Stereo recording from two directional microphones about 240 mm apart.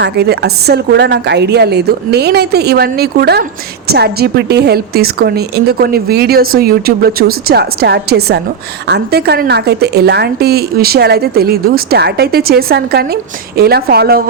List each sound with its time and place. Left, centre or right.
0.0 s a woman's voice: right